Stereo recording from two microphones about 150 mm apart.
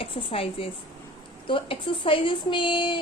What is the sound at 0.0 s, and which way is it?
A woman's voice, 40° left (ahead or behind).